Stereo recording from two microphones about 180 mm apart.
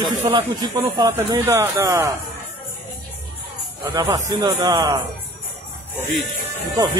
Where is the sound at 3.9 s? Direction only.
20° right (ahead or behind).